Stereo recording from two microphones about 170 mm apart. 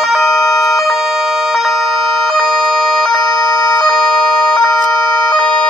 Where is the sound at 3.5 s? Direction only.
20° left (ahead or behind).